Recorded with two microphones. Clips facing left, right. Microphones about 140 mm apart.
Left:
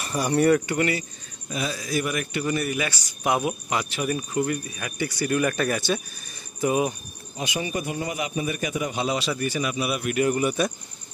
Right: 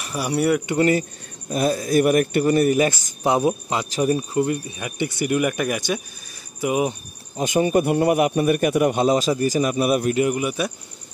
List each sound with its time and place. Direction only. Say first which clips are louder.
0.0 s speech: left 1 dB; 5° right (ahead or behind)
0.7 s a man's voice: right 6 dB; 40° right (ahead or behind)
1.5 s speech: right 8 dB; 50° right (ahead or behind)
3.3 s speech: right 5 dB; 30° right (ahead or behind)
7.3 s a man's voice: right 10 dB; 45° right (ahead or behind)
9.0 s a man's voice: right 7 dB; 40° right (ahead or behind)
10.1 s speech: right 1 dB; 15° right (ahead or behind)